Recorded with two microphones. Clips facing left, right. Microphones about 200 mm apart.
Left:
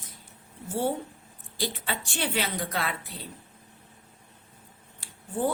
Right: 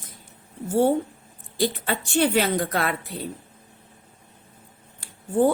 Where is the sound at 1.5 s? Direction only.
50° right (ahead or behind).